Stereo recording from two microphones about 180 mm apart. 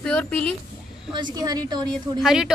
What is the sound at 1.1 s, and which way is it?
A woman's voice, 25° right (ahead or behind).